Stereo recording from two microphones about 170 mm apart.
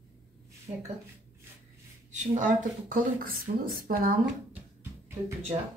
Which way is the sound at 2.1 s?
45° right (ahead or behind).